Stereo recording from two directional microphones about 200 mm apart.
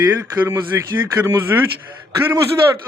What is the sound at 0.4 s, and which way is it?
A man's voice, 15° right (ahead or behind).